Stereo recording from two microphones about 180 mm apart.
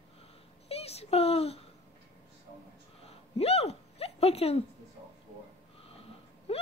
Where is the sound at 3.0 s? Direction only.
35° left (ahead or behind).